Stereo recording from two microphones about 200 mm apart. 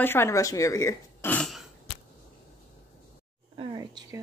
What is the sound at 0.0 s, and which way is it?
Speech, 10° left (ahead or behind).